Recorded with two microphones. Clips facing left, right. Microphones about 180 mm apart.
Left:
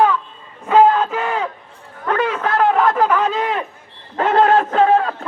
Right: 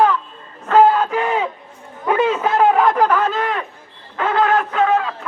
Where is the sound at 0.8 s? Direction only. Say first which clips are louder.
Even; 10° right (ahead or behind).